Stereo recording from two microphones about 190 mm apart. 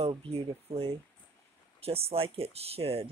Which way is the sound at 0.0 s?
30° right (ahead or behind).